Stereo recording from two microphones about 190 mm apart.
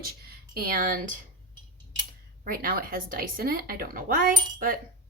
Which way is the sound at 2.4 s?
50° right (ahead or behind).